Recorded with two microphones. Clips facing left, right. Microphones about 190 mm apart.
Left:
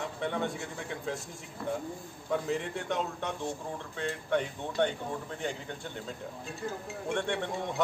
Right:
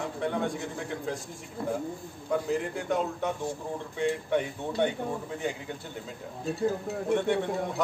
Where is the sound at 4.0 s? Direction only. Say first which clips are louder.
Right 4 dB; 10° right (ahead or behind).